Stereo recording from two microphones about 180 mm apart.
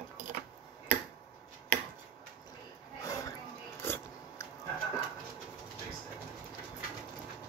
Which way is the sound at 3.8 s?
15° left (ahead or behind).